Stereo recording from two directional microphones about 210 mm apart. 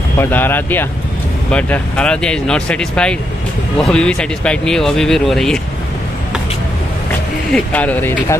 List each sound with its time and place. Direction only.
0.2 s speech: 10° left (ahead or behind)
7.5 s speech: 5° left (ahead or behind)